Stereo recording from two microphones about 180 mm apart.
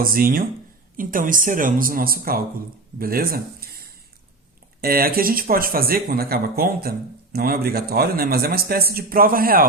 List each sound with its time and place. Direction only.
0.0 s a man's voice: 55° right (ahead or behind)